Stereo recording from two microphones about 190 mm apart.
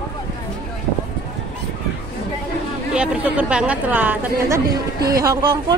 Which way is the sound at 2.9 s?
5° right (ahead or behind).